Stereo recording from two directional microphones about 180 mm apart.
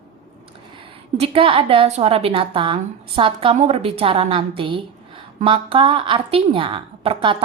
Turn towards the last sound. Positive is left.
turn(degrees=-30)  # may be behind; listen again after turning